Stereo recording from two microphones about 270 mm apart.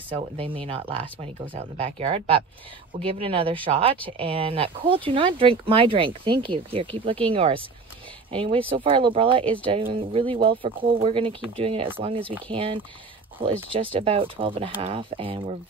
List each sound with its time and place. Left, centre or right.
0.1 s speech: centre
9.4 s speech: centre
9.9 s speech: centre